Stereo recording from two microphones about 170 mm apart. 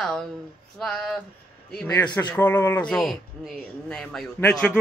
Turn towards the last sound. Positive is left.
turn(degrees=5)  # may be behind; listen again after turning